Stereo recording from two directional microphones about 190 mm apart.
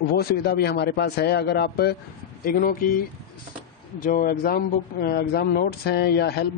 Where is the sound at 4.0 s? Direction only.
45° left (ahead or behind).